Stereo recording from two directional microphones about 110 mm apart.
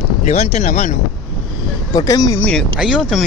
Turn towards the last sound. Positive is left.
turn(degrees=-5)  # may be behind; listen again after turning